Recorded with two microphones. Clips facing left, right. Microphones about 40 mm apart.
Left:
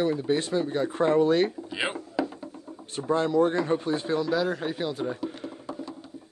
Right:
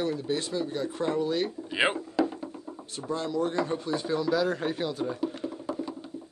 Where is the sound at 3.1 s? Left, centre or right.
Left.